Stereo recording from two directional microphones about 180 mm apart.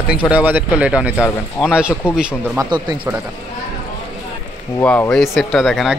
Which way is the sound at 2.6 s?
20° right (ahead or behind).